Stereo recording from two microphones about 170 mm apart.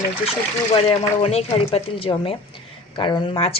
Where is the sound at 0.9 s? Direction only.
35° left (ahead or behind).